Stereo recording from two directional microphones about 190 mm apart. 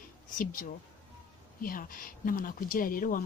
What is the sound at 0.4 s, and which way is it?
A woman's voice, 45° left (ahead or behind).